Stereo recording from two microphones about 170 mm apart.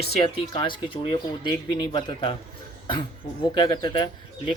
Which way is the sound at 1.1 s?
25° left (ahead or behind).